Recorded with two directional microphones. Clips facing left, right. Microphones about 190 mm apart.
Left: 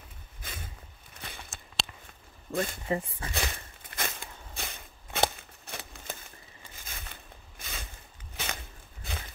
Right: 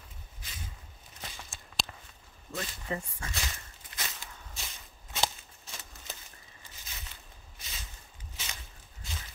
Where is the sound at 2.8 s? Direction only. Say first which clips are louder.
Left 5 dB; 30° left (ahead or behind).